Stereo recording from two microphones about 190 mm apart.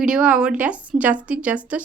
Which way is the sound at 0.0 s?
5° right (ahead or behind).